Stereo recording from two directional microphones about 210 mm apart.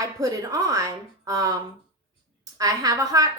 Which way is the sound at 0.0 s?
15° right (ahead or behind).